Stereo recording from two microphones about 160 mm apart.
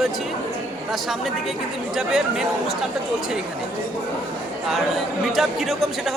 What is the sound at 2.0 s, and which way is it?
Speech, 5° right (ahead or behind).